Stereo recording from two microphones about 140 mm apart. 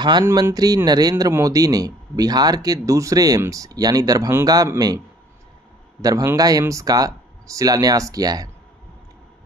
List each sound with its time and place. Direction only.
0.2 s speech: 20° right (ahead or behind)